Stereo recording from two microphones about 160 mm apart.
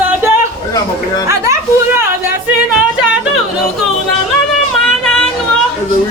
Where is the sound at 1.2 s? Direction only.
15° right (ahead or behind).